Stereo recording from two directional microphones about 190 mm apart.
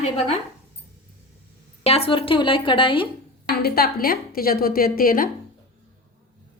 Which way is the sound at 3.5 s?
55° left (ahead or behind).